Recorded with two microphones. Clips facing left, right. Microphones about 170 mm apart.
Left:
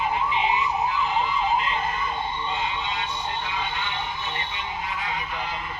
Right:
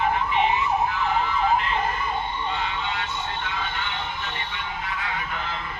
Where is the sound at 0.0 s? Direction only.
15° left (ahead or behind).